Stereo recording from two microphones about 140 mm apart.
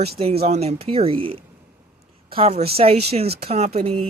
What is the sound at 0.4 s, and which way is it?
Speech, 55° right (ahead or behind).